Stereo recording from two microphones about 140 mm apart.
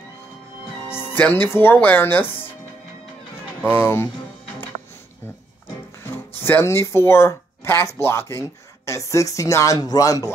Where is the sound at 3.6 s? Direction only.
15° left (ahead or behind).